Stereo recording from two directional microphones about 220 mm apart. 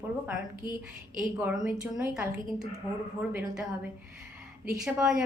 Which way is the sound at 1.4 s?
5° right (ahead or behind).